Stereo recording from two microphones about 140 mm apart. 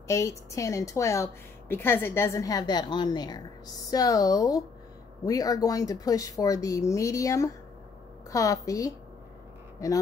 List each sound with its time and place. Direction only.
0.1 s a woman's voice: 20° left (ahead or behind)